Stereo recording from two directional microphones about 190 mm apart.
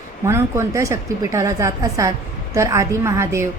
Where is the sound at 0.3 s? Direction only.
15° right (ahead or behind).